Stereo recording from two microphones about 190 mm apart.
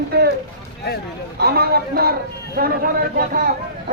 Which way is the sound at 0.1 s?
55° right (ahead or behind).